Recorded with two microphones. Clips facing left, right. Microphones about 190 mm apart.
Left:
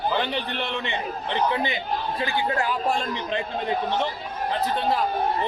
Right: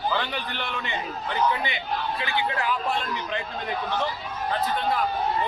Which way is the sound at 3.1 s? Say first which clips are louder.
Left 3 dB; 30° left (ahead or behind).